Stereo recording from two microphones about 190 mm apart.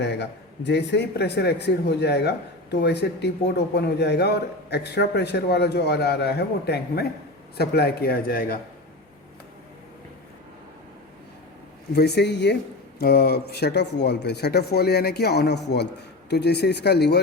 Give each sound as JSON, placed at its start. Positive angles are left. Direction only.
{"t": 0.0, "sound": "a man's voice", "side_deg": 65}
{"t": 11.9, "sound": "a man's voice", "side_deg": 60}
{"t": 13.0, "sound": "a man's voice", "side_deg": 55}